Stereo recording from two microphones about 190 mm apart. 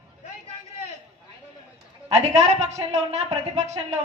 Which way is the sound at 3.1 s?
35° right (ahead or behind).